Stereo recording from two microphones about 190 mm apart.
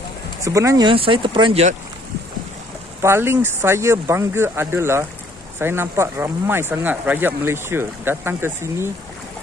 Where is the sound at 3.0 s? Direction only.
15° right (ahead or behind).